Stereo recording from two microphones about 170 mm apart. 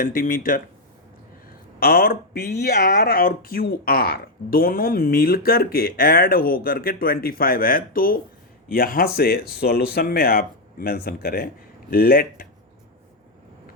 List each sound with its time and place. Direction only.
0.0 s speech: 55° left (ahead or behind)
1.8 s speech: 60° left (ahead or behind)